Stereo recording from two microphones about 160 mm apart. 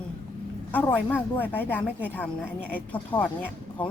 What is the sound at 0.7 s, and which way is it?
A woman's voice, 10° left (ahead or behind).